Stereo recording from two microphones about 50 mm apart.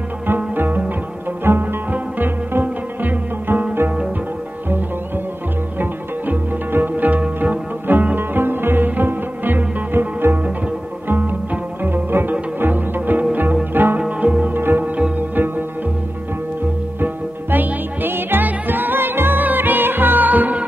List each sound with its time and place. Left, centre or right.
0.6 s music: right
1.4 s music: right
5.8 s music: right
8.2 s music: right
13.9 s music: right
14.5 s music: right
17.0 s music: right